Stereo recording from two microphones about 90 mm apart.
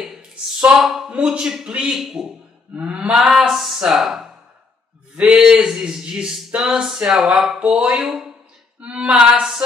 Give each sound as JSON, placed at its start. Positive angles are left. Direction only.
{"t": 0.7, "sound": "speech", "side_deg": -5}
{"t": 2.7, "sound": "speech", "side_deg": -15}